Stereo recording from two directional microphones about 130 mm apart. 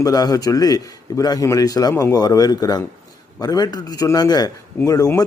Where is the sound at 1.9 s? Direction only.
15° left (ahead or behind).